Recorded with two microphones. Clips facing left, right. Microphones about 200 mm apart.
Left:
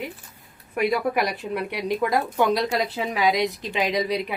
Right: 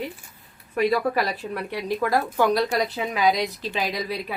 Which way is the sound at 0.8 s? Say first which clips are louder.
Right 1 dB; 15° left (ahead or behind).